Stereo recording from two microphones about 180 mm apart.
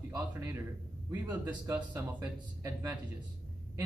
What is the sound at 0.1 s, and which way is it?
A man's voice, 15° right (ahead or behind).